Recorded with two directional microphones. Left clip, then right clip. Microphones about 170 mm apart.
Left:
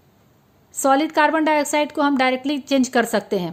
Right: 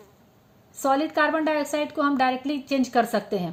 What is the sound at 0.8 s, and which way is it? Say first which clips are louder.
A woman's voice: left 5 dB; 50° left (ahead or behind).